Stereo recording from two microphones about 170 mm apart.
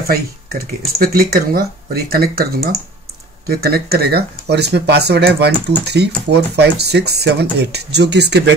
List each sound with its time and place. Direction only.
0.1 s speech: 65° right (ahead or behind); by 8.5 s 80° right